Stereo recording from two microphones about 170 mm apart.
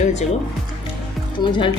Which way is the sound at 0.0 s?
40° left (ahead or behind).